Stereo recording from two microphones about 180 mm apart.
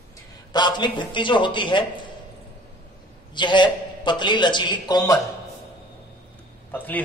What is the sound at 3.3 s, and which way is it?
A man's voice, 25° left (ahead or behind).